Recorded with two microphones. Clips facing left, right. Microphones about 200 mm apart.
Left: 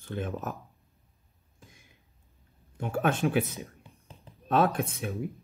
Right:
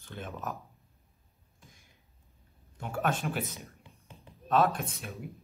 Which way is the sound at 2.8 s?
55° left (ahead or behind).